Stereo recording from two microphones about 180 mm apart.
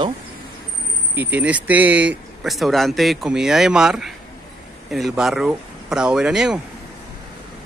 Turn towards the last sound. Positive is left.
turn(degrees=-5)  # may be behind; listen again after turning